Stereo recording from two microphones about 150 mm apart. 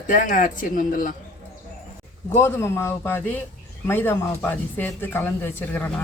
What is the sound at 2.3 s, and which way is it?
Speech, 15° left (ahead or behind).